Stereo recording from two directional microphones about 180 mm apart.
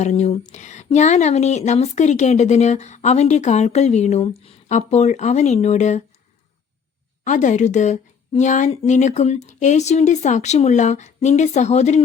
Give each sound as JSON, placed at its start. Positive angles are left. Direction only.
{"t": 0.0, "sound": "speech", "side_deg": 40}
{"t": 7.3, "sound": "speech", "side_deg": 45}